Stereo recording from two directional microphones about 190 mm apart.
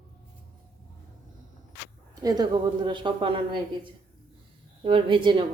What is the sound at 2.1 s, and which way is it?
A woman's voice, 20° right (ahead or behind).